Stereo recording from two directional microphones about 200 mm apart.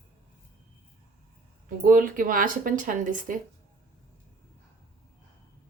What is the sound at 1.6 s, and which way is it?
Speech, 40° right (ahead or behind).